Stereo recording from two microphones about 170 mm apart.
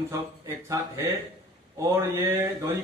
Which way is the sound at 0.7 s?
15° right (ahead or behind).